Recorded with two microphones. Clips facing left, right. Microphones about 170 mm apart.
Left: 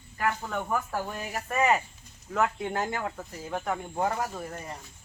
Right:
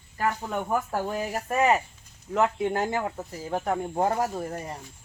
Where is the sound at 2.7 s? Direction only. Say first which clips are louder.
Right 4 dB; 25° right (ahead or behind).